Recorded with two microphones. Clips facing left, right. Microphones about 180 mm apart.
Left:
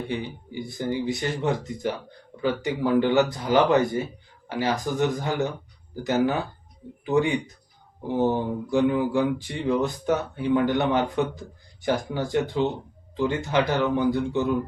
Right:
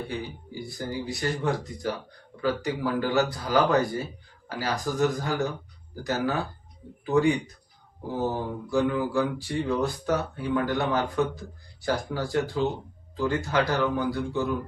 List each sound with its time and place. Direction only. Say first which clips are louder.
0.8 s speech: left 5 dB; 20° left (ahead or behind)